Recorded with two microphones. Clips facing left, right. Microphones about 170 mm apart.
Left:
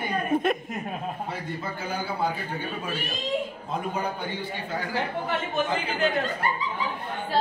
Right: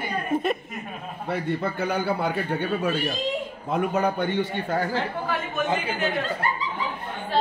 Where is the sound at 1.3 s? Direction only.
65° right (ahead or behind).